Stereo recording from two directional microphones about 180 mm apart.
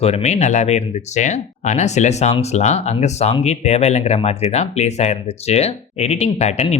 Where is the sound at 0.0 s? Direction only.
35° left (ahead or behind).